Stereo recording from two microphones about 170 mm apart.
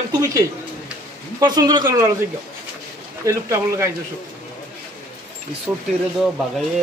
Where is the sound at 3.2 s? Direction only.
15° right (ahead or behind).